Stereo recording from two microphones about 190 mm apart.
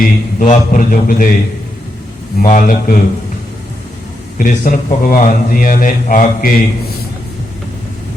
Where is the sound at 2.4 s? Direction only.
45° left (ahead or behind).